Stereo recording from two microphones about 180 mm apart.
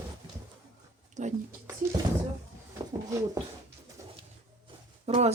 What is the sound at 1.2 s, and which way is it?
Speech, 40° right (ahead or behind).